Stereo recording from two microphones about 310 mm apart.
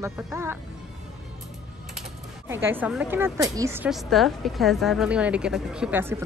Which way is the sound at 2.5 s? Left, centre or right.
Centre.